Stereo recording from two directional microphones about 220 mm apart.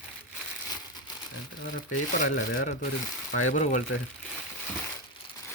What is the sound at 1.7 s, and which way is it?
Speech, 35° left (ahead or behind).